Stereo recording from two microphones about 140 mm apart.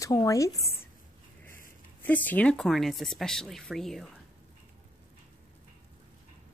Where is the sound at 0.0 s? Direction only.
25° left (ahead or behind).